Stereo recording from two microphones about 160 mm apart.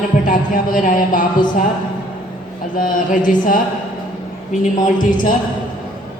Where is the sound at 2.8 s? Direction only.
55° left (ahead or behind).